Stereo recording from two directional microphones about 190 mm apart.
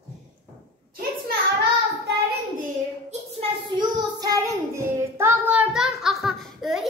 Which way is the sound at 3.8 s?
20° right (ahead or behind).